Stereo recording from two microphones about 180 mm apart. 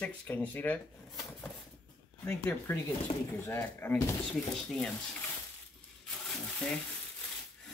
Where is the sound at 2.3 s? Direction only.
10° left (ahead or behind).